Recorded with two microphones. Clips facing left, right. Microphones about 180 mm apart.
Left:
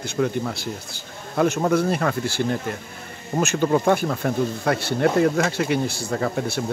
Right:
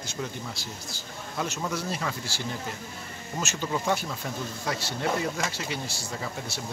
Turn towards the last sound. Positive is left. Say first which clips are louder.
# left 11 dB
turn(degrees=60)  # may be behind; listen again after turning